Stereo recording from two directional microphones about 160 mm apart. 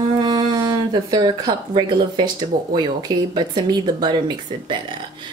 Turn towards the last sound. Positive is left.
turn(degrees=-30)  # may be behind; listen again after turning